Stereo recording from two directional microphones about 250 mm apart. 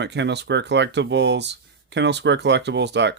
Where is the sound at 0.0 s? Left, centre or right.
Right.